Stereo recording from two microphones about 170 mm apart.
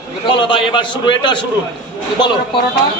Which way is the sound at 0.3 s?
30° left (ahead or behind).